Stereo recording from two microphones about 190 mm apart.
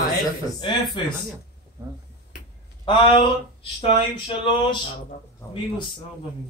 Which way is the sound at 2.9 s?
25° left (ahead or behind).